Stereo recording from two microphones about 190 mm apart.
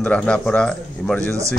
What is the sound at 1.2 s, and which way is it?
Speech, 15° right (ahead or behind).